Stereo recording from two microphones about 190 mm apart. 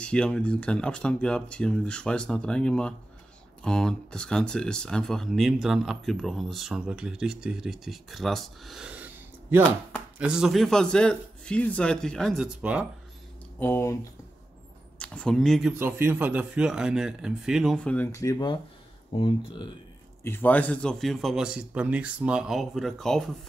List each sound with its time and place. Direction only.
0.0 s speech: 5° left (ahead or behind)
10.1 s speech: 5° right (ahead or behind)
13.6 s speech: 10° left (ahead or behind)
15.0 s speech: 5° left (ahead or behind)
15.8 s speech: 10° right (ahead or behind); by 19.7 s 25° left (ahead or behind)
20.2 s speech: 10° left (ahead or behind)